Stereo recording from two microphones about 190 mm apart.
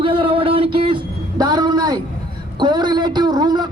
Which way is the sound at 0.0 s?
25° right (ahead or behind).